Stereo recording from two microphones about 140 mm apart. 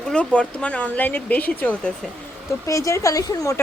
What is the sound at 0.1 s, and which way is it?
Speech, 10° left (ahead or behind).